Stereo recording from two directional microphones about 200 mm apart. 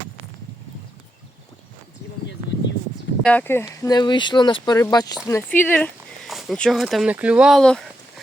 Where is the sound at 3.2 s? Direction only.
10° left (ahead or behind).